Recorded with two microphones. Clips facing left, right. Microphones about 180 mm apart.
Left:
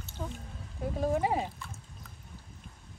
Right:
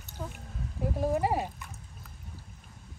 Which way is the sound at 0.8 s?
5° right (ahead or behind).